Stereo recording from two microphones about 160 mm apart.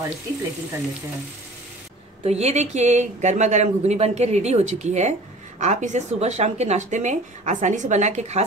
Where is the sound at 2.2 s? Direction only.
45° right (ahead or behind).